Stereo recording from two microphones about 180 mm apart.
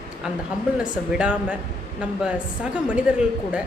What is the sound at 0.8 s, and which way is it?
Speech, 5° right (ahead or behind).